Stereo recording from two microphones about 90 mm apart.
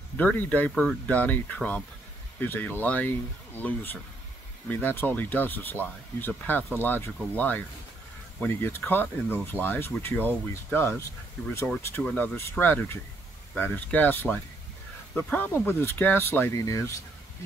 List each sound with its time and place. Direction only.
0.2 s speech: 20° left (ahead or behind)
12.2 s speech: 20° left (ahead or behind)
16.5 s speech: 35° left (ahead or behind)